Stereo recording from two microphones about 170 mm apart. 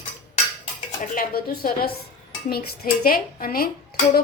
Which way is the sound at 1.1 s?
60° left (ahead or behind).